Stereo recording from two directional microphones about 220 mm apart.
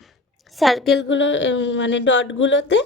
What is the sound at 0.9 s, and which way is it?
Speech, 55° left (ahead or behind).